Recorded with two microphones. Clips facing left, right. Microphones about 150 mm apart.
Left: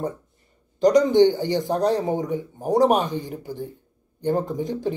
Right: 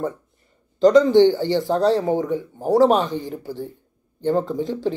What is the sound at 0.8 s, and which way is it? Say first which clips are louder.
Speech: right 3 dB; 15° left (ahead or behind).